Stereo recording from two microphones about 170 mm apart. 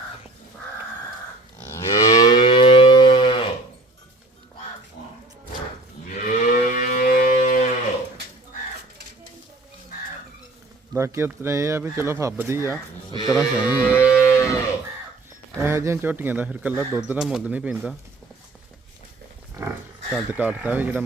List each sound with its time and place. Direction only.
1.9 s livestock: 20° left (ahead or behind)
2.4 s guitar: 30° left (ahead or behind)
6.2 s moo: 55° left (ahead or behind)
10.9 s speech: 15° right (ahead or behind)
13.1 s speech: 25° left (ahead or behind)
13.3 s a sound: 5° right (ahead or behind)
13.9 s cattle: 15° left (ahead or behind)
15.5 s speech: 15° right (ahead or behind)
20.3 s speech: 10° right (ahead or behind)